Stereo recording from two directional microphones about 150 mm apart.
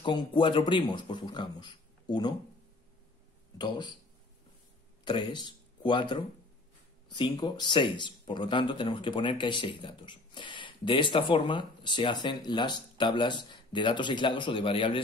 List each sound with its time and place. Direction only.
0.0 s speech: 35° left (ahead or behind)
3.5 s speech: 30° left (ahead or behind)
5.0 s speech: 30° left (ahead or behind)